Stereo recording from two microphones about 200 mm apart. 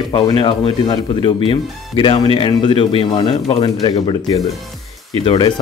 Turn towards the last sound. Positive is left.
turn(degrees=25)  # may be behind; listen again after turning